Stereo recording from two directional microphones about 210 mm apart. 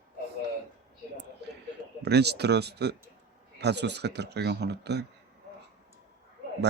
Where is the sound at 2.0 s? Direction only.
50° right (ahead or behind).